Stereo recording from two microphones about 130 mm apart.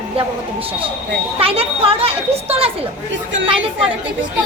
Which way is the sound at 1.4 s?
45° right (ahead or behind).